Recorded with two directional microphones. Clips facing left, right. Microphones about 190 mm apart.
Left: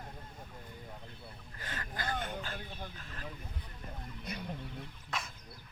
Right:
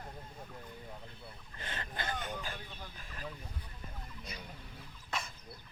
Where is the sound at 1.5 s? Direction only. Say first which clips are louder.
Even; 25° right (ahead or behind).